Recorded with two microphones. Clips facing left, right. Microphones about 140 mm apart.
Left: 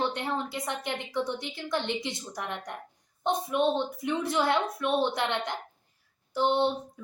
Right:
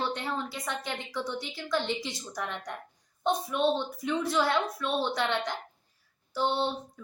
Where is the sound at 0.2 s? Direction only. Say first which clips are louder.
Left 2 dB; 20° left (ahead or behind).